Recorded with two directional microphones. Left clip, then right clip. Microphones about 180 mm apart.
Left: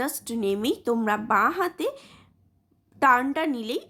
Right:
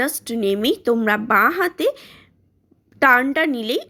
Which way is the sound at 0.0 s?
15° right (ahead or behind).